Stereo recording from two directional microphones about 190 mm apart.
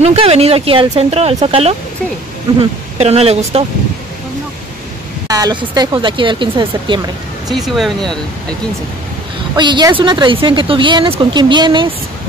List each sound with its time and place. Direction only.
0.0 s speech: 35° right (ahead or behind)
5.3 s speech: 20° right (ahead or behind)
7.4 s speech: centre (ahead or behind)
9.6 s speech: 25° right (ahead or behind)